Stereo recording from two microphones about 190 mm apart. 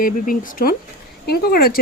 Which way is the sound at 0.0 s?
50° left (ahead or behind).